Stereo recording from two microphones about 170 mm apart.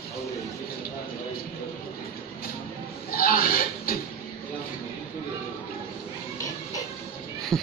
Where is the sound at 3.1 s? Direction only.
60° left (ahead or behind).